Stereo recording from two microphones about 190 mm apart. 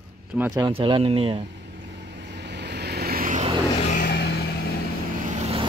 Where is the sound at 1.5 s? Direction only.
65° right (ahead or behind); by 3.5 s 45° right (ahead or behind).